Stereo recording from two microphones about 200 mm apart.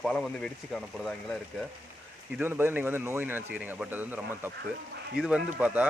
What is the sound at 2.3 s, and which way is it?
Speech, 10° right (ahead or behind).